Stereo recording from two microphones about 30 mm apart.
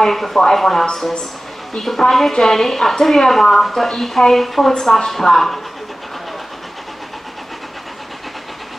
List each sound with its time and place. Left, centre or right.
0.0 s speech: centre
4.7 s speech: centre